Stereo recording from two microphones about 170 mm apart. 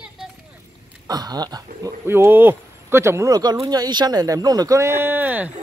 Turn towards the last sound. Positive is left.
turn(degrees=-10)  # may be behind; listen again after turning